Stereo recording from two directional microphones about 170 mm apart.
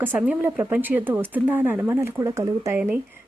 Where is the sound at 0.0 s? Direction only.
10° right (ahead or behind).